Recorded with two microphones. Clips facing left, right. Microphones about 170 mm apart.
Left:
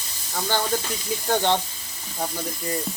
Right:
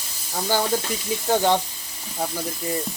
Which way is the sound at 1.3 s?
5° right (ahead or behind).